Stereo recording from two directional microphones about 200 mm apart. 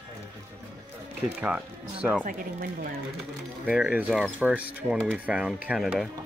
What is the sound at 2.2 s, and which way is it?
Speech, 45° right (ahead or behind).